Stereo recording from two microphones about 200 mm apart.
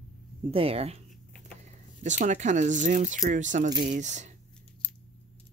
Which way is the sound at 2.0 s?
35° right (ahead or behind).